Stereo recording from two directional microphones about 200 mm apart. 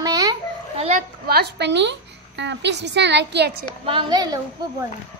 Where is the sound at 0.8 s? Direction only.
35° right (ahead or behind).